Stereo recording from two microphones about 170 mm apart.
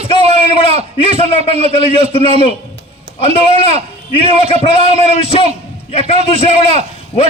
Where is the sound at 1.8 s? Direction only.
35° left (ahead or behind).